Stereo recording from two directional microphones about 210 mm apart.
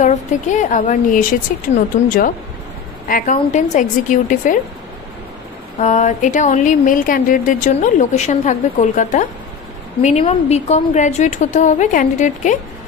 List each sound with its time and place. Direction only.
0.0 s speech: 35° left (ahead or behind)
5.8 s speech: 35° left (ahead or behind)